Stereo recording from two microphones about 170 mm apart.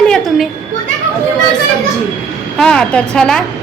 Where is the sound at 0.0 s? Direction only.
5° left (ahead or behind).